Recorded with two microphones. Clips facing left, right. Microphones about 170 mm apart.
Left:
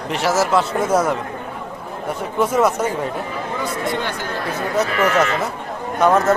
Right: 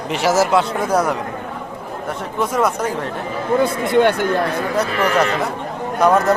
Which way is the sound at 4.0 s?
60° right (ahead or behind).